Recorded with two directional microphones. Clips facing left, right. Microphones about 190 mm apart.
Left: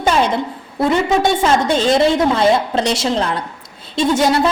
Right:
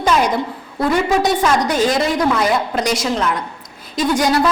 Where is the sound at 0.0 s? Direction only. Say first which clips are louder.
Left 1 dB; 25° left (ahead or behind).